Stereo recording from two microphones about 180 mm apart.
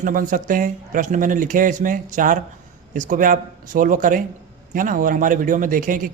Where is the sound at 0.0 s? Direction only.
50° right (ahead or behind).